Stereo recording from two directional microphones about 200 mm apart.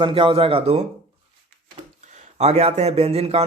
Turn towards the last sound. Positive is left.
turn(degrees=-30)  # may be behind; listen again after turning